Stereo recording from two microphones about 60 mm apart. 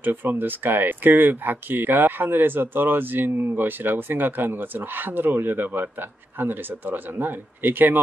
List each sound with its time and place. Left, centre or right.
0.0 s speech: right